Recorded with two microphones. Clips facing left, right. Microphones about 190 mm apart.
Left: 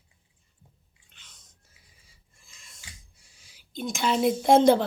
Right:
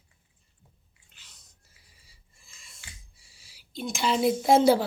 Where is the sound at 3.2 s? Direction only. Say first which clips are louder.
Even; 45° left (ahead or behind).